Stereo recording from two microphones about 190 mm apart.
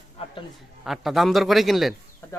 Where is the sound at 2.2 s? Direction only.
10° left (ahead or behind).